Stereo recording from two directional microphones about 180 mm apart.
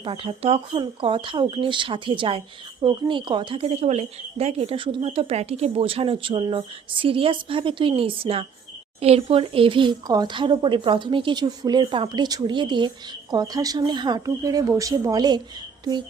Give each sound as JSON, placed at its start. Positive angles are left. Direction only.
{"t": 0.0, "sound": "a woman's voice", "side_deg": -30}